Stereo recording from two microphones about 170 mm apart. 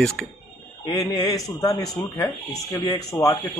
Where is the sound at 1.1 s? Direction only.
20° left (ahead or behind).